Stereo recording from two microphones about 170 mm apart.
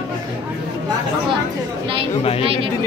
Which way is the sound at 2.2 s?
35° left (ahead or behind).